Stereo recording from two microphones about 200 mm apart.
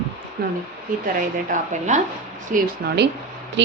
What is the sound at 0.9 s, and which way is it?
A woman's voice, 45° right (ahead or behind).